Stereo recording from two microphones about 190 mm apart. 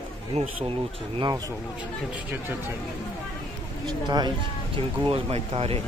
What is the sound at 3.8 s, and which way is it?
Speech, 20° right (ahead or behind).